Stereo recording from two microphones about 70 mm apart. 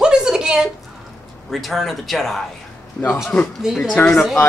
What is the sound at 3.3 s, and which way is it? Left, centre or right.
Speech, centre.